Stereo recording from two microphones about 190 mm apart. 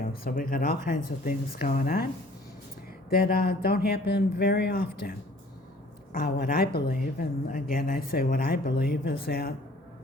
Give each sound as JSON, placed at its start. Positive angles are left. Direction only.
{"t": 0.0, "sound": "speech", "side_deg": 50}
{"t": 3.1, "sound": "speech", "side_deg": 50}
{"t": 6.1, "sound": "speech", "side_deg": 50}